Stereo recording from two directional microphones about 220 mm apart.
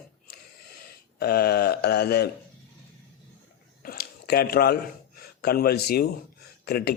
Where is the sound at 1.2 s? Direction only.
45° left (ahead or behind).